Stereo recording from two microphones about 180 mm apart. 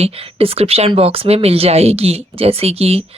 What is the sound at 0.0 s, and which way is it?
A woman's voice, 35° right (ahead or behind).